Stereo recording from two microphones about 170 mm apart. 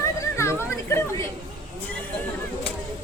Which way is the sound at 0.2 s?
15° left (ahead or behind).